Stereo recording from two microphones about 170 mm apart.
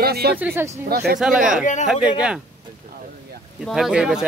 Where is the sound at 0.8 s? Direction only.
70° right (ahead or behind).